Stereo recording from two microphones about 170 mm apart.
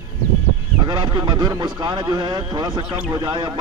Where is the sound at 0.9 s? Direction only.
25° right (ahead or behind).